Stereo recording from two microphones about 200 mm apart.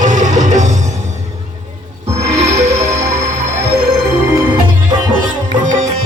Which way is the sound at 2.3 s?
35° right (ahead or behind).